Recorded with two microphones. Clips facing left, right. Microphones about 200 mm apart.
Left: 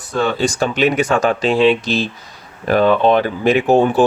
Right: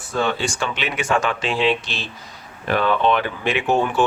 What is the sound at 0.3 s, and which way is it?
Speech, 40° left (ahead or behind).